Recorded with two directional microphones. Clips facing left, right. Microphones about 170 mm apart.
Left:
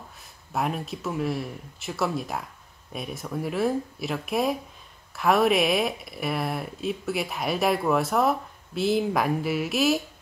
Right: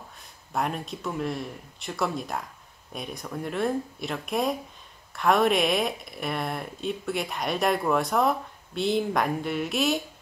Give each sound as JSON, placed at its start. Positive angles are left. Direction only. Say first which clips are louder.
{"t": 0.5, "sound": "speech", "louder": "left 1 dB", "side_deg": 0}